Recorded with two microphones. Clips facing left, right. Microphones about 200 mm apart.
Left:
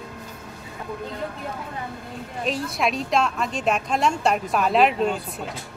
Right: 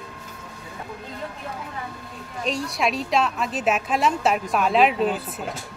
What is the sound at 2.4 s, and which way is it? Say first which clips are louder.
Speech: even; centre (ahead or behind).